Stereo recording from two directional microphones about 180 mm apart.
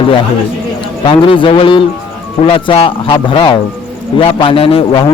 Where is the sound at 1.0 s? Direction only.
30° left (ahead or behind).